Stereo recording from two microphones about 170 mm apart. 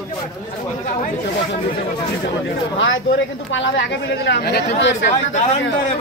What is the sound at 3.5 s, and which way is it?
Speech, 90° left.